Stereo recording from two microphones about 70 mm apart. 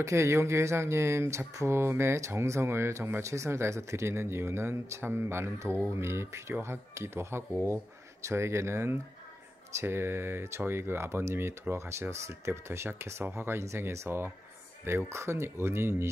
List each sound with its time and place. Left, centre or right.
0.0 s speech: right